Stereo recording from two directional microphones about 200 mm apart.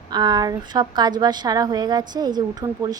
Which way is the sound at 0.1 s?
20° right (ahead or behind).